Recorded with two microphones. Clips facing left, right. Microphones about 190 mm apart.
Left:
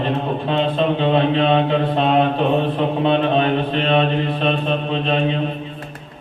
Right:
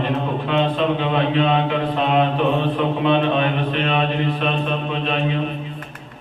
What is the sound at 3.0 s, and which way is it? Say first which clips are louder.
Mantra: left 2 dB; 35° left (ahead or behind).